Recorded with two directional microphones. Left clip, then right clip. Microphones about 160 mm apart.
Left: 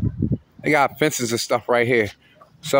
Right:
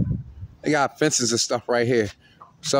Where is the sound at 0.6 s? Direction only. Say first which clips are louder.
Left 3 dB; 25° right (ahead or behind).